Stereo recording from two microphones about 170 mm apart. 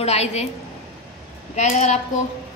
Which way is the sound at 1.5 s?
45° left (ahead or behind).